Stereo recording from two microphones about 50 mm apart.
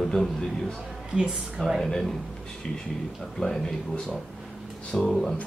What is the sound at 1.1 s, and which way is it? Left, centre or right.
Speech, centre.